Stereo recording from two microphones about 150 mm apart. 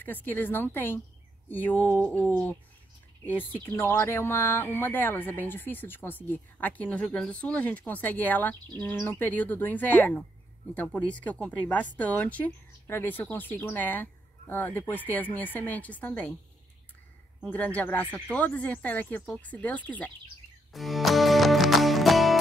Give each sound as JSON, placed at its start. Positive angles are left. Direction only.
{"t": 0.0, "sound": "speech", "side_deg": 10}
{"t": 1.9, "sound": "a sound", "side_deg": -15}
{"t": 3.3, "sound": "speech", "side_deg": 10}
{"t": 17.5, "sound": "speech", "side_deg": 10}
{"t": 20.7, "sound": "music", "side_deg": 0}